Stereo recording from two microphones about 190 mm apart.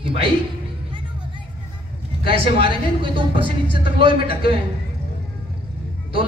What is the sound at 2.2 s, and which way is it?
A man's voice, 30° right (ahead or behind).